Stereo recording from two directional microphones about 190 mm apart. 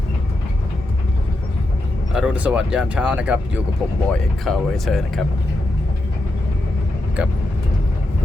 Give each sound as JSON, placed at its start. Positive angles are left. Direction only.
{"t": 2.1, "sound": "speech", "side_deg": -5}
{"t": 7.2, "sound": "speech", "side_deg": -5}